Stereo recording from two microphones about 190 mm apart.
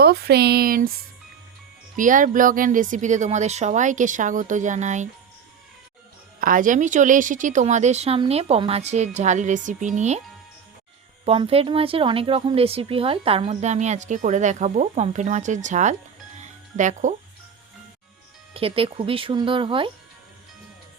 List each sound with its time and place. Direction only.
0.0 s speech: 55° right (ahead or behind)
2.0 s speech: 45° right (ahead or behind)
6.4 s speech: 45° right (ahead or behind)
11.3 s speech: 30° right (ahead or behind)
16.4 s music: 40° right (ahead or behind)
18.5 s speech: 30° right (ahead or behind)